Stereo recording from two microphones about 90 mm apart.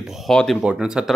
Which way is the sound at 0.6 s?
5° right (ahead or behind).